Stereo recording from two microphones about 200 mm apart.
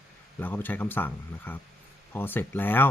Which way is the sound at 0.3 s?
10° left (ahead or behind).